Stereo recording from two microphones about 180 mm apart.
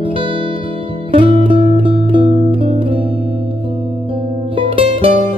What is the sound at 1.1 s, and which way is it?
Music, 30° right (ahead or behind).